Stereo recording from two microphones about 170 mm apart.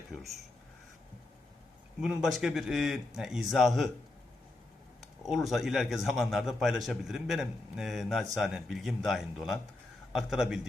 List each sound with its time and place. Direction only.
0.1 s speech: centre (ahead or behind)
2.0 s a man's voice: centre (ahead or behind)
5.2 s a man's voice: centre (ahead or behind)